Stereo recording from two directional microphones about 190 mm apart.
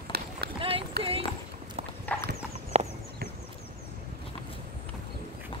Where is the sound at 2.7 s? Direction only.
35° right (ahead or behind).